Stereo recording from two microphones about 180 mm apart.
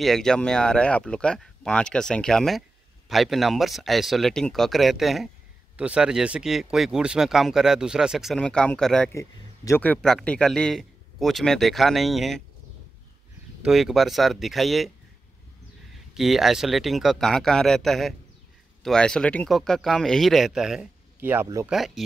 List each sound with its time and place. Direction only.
0.0 s a man's voice: centre (ahead or behind)
9.1 s a man's voice: 15° left (ahead or behind); by 12.4 s centre (ahead or behind)
13.6 s a man's voice: centre (ahead or behind)
16.2 s a man's voice: centre (ahead or behind)
21.6 s a man's voice: centre (ahead or behind)